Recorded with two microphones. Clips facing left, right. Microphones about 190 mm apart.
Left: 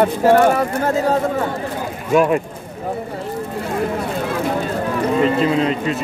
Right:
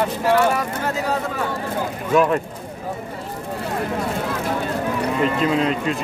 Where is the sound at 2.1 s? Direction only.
10° left (ahead or behind).